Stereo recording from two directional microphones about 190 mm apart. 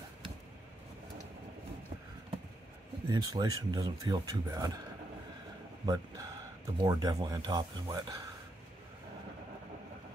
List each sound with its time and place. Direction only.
3.1 s speech: 20° right (ahead or behind)
5.9 s speech: 20° right (ahead or behind)